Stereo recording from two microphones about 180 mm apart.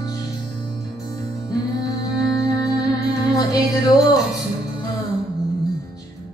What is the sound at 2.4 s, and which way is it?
Music, 20° left (ahead or behind).